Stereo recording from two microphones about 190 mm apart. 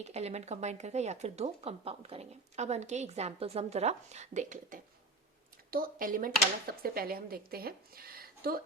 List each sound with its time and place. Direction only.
0.0 s speech: 35° right (ahead or behind); by 8.6 s 50° right (ahead or behind)